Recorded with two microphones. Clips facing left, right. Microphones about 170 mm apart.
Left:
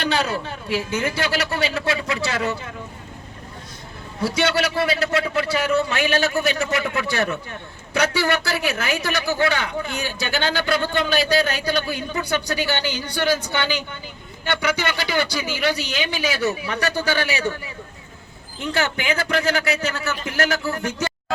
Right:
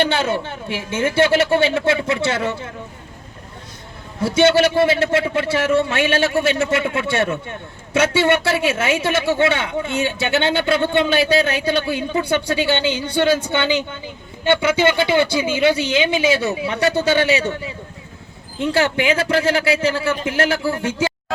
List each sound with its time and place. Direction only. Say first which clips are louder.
0.0 s a man's voice: right 4 dB; 25° right (ahead or behind)
4.2 s a man's voice: right 7 dB; 25° right (ahead or behind)